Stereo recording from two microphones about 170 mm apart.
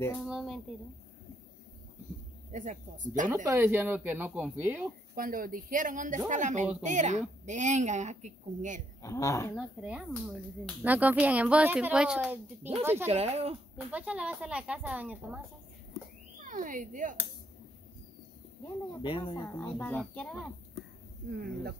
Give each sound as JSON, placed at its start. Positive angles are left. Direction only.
{"t": 0.3, "sound": "speech", "side_deg": 0}
{"t": 2.5, "sound": "a woman's voice", "side_deg": -45}
{"t": 3.4, "sound": "speech", "side_deg": -15}
{"t": 5.1, "sound": "a woman's voice", "side_deg": -55}
{"t": 9.0, "sound": "a woman's voice", "side_deg": 20}
{"t": 9.6, "sound": "speech", "side_deg": -5}
{"t": 13.1, "sound": "speech", "side_deg": -40}
{"t": 13.9, "sound": "speech", "side_deg": -5}
{"t": 16.4, "sound": "speech", "side_deg": -50}
{"t": 19.0, "sound": "speech", "side_deg": 30}
{"t": 19.4, "sound": "a woman's voice", "side_deg": 10}
{"t": 21.3, "sound": "speech", "side_deg": -65}